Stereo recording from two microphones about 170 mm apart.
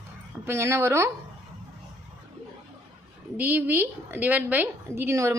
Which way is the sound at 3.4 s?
10° right (ahead or behind).